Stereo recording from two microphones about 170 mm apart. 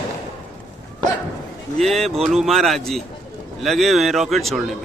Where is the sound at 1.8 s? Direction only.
Centre (ahead or behind).